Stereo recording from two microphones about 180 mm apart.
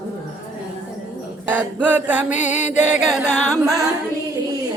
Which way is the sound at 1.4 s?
10° right (ahead or behind).